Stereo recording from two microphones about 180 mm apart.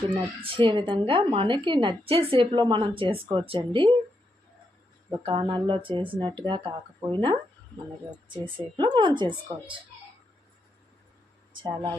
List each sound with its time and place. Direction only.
0.4 s a woman's voice: 30° right (ahead or behind)
5.2 s a woman's voice: 25° right (ahead or behind)
8.7 s a woman's voice: 25° right (ahead or behind)
11.6 s a woman's voice: 20° right (ahead or behind)